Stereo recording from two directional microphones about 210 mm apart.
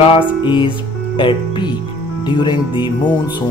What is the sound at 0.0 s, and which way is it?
Speech, 25° left (ahead or behind).